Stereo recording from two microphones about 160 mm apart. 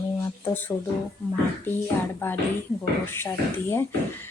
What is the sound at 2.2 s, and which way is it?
Speech, 15° left (ahead or behind).